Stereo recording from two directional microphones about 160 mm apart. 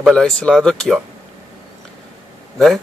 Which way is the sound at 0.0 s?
5° left (ahead or behind).